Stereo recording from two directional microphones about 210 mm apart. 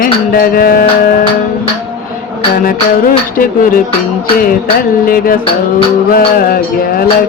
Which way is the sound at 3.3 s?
40° left (ahead or behind).